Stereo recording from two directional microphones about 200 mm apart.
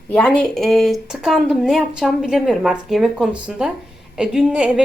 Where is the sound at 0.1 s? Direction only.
5° left (ahead or behind).